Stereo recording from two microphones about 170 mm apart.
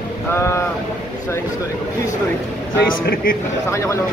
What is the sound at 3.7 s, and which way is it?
Speech, 15° left (ahead or behind).